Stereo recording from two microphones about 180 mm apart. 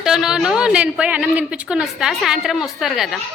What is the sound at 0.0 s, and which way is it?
A woman's voice, 5° right (ahead or behind).